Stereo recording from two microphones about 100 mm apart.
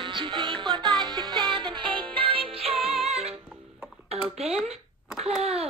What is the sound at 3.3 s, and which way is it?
Music, 10° right (ahead or behind).